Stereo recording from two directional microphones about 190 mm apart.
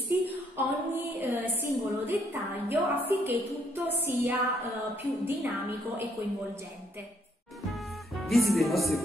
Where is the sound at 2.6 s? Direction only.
10° right (ahead or behind).